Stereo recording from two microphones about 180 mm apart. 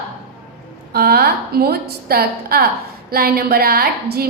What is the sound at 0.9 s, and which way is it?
A woman's voice, 60° right (ahead or behind).